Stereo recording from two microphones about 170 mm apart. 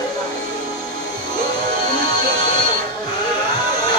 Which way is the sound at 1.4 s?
25° left (ahead or behind).